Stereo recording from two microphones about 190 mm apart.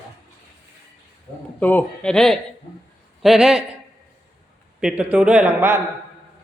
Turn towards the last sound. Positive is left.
turn(degrees=-10)  # may be behind; listen again after turning